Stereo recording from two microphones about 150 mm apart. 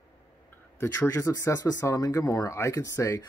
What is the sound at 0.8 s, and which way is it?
Speech, 15° left (ahead or behind).